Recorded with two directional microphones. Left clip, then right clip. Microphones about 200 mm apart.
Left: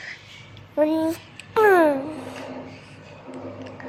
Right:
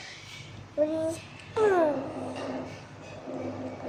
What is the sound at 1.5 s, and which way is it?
Babbling, 45° left (ahead or behind).